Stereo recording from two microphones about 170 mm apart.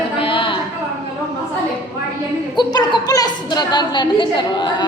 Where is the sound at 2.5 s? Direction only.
25° left (ahead or behind).